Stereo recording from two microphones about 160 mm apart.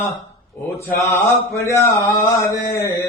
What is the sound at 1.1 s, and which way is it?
Mantra, 15° left (ahead or behind).